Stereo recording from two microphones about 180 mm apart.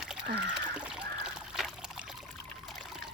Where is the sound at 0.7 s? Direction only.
5° right (ahead or behind).